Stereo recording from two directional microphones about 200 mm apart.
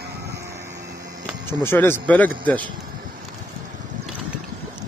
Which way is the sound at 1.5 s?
10° left (ahead or behind).